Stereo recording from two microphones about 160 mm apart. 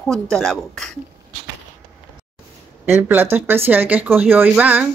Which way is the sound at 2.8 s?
10° right (ahead or behind).